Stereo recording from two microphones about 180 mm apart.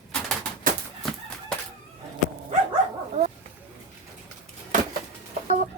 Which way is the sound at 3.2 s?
40° right (ahead or behind).